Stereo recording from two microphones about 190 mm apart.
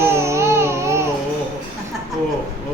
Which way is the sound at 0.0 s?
15° right (ahead or behind).